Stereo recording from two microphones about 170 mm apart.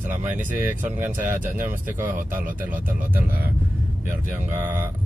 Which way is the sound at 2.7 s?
10° right (ahead or behind).